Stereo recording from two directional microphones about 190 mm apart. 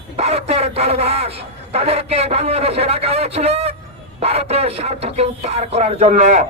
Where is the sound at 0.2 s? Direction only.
35° right (ahead or behind).